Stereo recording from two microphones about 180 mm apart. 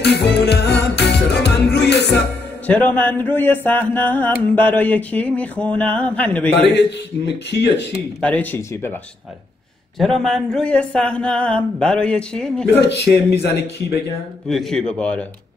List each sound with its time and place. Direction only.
0.0 s music: 70° left (ahead or behind)
2.6 s a sound: 10° left (ahead or behind)
6.5 s speech: 70° left (ahead or behind)
8.2 s a sound: 10° left (ahead or behind)
9.9 s speech: centre (ahead or behind)
12.8 s speech: 65° left (ahead or behind)
14.5 s speech: centre (ahead or behind)